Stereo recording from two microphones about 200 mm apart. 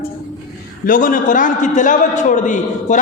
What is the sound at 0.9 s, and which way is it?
A man's voice, 45° left (ahead or behind).